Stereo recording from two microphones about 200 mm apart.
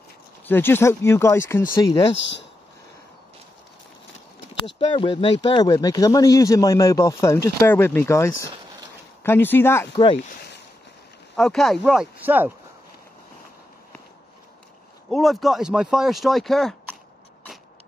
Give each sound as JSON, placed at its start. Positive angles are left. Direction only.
{"t": 0.5, "sound": "speech", "side_deg": 10}
{"t": 4.6, "sound": "speech", "side_deg": 25}
{"t": 11.3, "sound": "speech", "side_deg": 0}
{"t": 15.0, "sound": "speech", "side_deg": 0}